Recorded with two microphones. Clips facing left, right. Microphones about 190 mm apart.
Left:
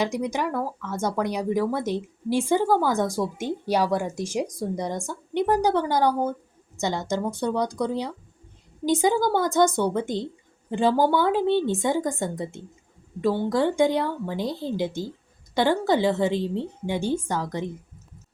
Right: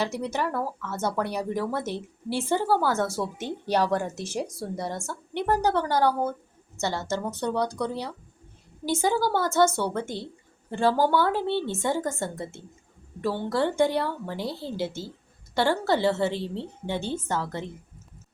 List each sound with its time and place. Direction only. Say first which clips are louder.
0.0 s a woman's voice: left 2 dB; 15° left (ahead or behind)